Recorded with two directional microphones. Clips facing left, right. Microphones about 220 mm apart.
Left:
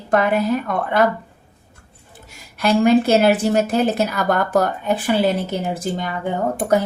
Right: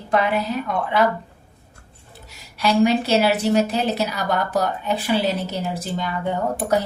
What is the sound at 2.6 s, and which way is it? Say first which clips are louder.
A woman's voice: left 3 dB; 50° left (ahead or behind).